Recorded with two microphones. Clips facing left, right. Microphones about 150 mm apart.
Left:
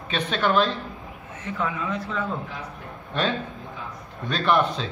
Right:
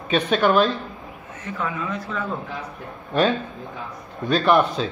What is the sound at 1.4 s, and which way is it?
Speech, 25° left (ahead or behind).